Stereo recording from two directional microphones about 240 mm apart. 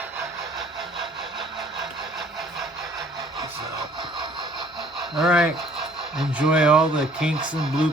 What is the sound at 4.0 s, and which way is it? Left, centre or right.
Vehicle, centre.